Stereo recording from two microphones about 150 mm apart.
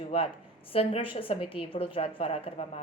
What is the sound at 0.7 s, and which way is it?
A woman's voice, 40° left (ahead or behind).